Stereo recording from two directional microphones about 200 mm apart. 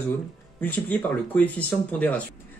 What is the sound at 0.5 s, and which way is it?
Speech, 10° left (ahead or behind).